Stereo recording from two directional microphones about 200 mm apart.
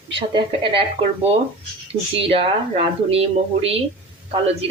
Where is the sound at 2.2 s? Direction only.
25° right (ahead or behind).